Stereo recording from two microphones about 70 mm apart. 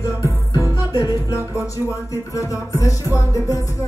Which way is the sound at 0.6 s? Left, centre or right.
Right.